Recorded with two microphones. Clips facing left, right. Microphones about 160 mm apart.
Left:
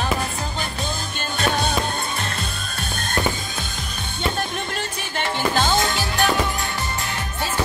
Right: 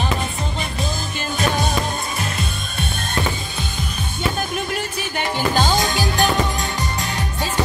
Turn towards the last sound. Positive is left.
turn(degrees=-20)  # may be behind; listen again after turning